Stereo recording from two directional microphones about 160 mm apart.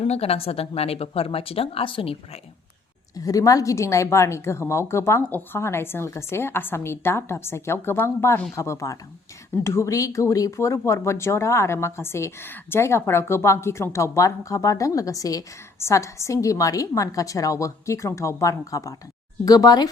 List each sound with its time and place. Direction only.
0.0 s speech: 40° left (ahead or behind)
3.2 s a woman's voice: 20° left (ahead or behind)